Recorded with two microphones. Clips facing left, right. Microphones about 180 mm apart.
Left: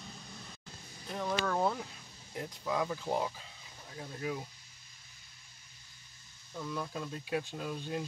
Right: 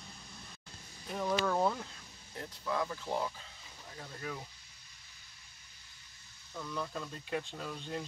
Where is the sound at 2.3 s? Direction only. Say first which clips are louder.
Left 2 dB; 15° left (ahead or behind).